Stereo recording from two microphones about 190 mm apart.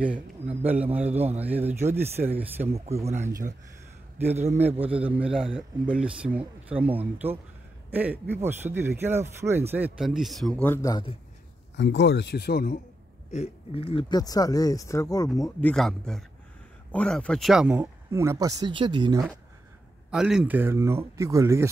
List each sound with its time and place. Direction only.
0.6 s speech: 10° right (ahead or behind)
1.1 s speech: 35° right (ahead or behind)
1.4 s speech: 10° right (ahead or behind)
2.7 s speech: 35° right (ahead or behind)
5.1 s speech: 5° right (ahead or behind); by 11.1 s 15° left (ahead or behind)
11.7 s speech: 65° left (ahead or behind); by 12.8 s 50° left (ahead or behind)
13.3 s speech: 30° left (ahead or behind)
15.6 s speech: centre (ahead or behind); by 19.2 s 25° right (ahead or behind)
20.1 s speech: 5° right (ahead or behind)